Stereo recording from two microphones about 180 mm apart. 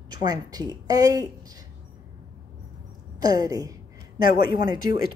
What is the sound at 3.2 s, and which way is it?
Speech, 20° right (ahead or behind).